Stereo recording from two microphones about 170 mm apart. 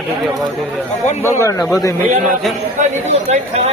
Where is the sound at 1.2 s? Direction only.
20° left (ahead or behind).